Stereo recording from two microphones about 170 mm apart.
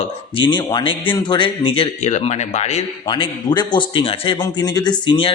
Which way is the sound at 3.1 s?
30° left (ahead or behind).